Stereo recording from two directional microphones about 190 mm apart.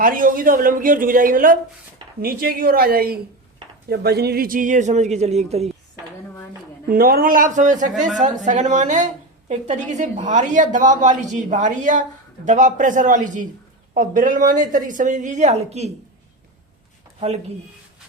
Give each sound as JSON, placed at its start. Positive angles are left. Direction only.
{"t": 0.0, "sound": "a woman's voice", "side_deg": -45}
{"t": 6.9, "sound": "a woman's voice", "side_deg": -50}
{"t": 17.2, "sound": "speech", "side_deg": -35}